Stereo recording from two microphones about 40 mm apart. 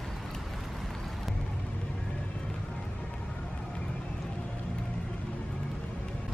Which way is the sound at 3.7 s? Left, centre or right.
Left.